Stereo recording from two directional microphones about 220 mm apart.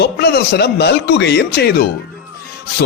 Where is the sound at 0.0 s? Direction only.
45° left (ahead or behind).